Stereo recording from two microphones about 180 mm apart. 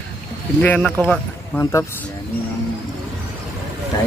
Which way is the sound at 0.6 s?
10° left (ahead or behind).